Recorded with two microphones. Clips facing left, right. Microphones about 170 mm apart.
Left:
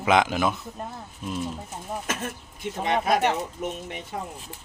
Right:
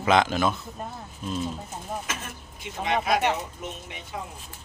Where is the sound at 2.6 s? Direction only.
50° left (ahead or behind).